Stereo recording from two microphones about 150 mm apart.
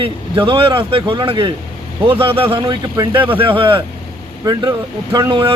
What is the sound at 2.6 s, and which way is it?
Speech, 25° right (ahead or behind).